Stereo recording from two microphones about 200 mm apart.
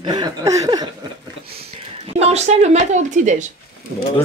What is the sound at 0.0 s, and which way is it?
Speech, 20° right (ahead or behind).